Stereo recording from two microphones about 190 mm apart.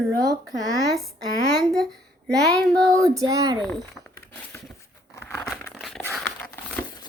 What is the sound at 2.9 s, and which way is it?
Child singing, 20° right (ahead or behind).